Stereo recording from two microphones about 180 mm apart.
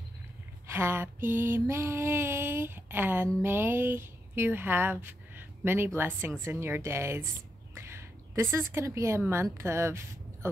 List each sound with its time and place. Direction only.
0.7 s female singing: 15° right (ahead or behind)
3.4 s speech: 10° right (ahead or behind)
5.9 s female singing: 10° right (ahead or behind)
7.7 s a woman's voice: 15° right (ahead or behind)